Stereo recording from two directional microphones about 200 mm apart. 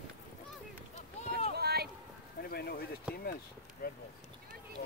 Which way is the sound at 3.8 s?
50° left (ahead or behind).